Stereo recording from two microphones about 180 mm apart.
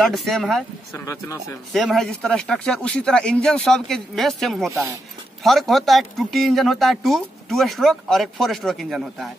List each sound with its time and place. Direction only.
0.0 s speech: centre (ahead or behind)
0.9 s speech: 15° left (ahead or behind)
1.7 s speech: centre (ahead or behind)